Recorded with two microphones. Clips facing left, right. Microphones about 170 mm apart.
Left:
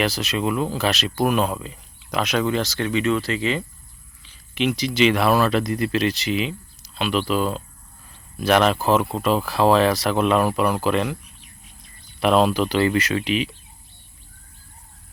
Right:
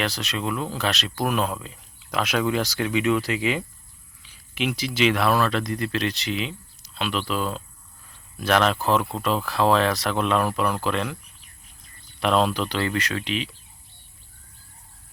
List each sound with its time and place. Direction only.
0.0 s speech: 5° left (ahead or behind)
12.2 s speech: 5° left (ahead or behind)